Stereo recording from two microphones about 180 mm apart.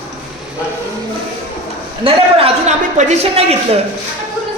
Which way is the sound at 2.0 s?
35° right (ahead or behind).